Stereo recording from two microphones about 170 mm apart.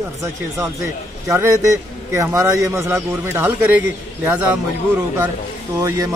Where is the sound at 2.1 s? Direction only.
20° right (ahead or behind).